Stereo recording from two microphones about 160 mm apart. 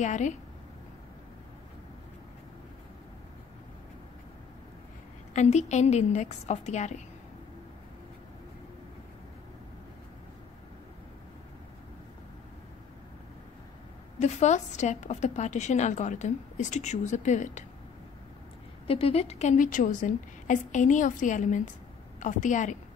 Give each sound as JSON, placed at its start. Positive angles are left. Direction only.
{"t": 0.0, "sound": "a woman's voice", "side_deg": 50}
{"t": 5.3, "sound": "a woman's voice", "side_deg": 45}
{"t": 14.2, "sound": "a woman's voice", "side_deg": 45}
{"t": 18.9, "sound": "a woman's voice", "side_deg": 35}